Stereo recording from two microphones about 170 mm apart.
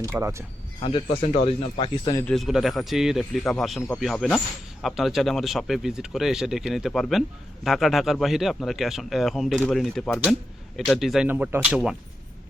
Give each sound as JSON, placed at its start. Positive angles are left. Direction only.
{"t": 0.0, "sound": "speech", "side_deg": -15}
{"t": 0.8, "sound": "speech", "side_deg": 30}
{"t": 2.2, "sound": "speech", "side_deg": 0}
{"t": 11.3, "sound": "speech", "side_deg": -10}